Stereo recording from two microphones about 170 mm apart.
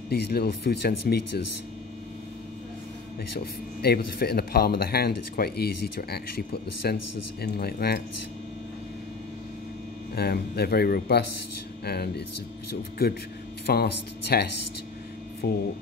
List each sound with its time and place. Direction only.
0.1 s speech: 70° left (ahead or behind)
3.3 s speech: 65° left (ahead or behind)
10.1 s speech: 70° left (ahead or behind)
13.7 s speech: 65° left (ahead or behind)